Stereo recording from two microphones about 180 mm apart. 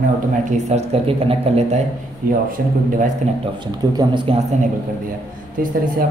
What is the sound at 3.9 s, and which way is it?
Speech, 25° right (ahead or behind).